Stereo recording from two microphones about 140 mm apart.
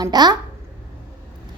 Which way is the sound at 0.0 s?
30° right (ahead or behind).